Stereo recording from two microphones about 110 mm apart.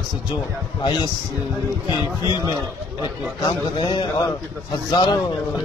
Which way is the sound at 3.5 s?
45° left (ahead or behind).